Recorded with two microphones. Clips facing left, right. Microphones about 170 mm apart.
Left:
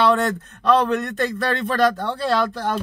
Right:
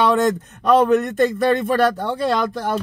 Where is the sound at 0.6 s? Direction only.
15° right (ahead or behind).